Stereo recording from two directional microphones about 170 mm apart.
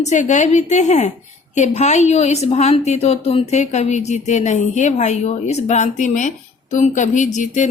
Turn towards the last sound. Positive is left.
turn(degrees=45)  # may be behind; listen again after turning